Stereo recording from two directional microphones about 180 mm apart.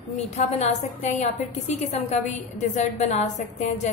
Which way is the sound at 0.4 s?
40° left (ahead or behind).